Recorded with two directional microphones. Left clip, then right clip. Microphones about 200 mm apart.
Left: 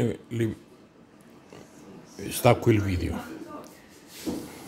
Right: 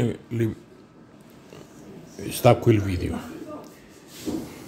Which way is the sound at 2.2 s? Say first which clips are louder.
Right 3 dB; 5° left (ahead or behind).